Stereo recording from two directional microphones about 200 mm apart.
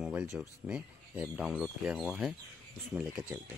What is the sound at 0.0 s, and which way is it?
Speech, 5° right (ahead or behind).